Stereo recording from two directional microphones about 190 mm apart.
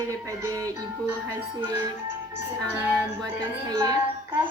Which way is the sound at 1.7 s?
10° right (ahead or behind).